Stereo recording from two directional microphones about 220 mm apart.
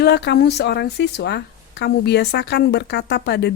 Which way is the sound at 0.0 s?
50° left (ahead or behind).